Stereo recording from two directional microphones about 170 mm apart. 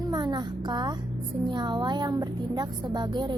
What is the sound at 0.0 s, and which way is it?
Music, 25° right (ahead or behind).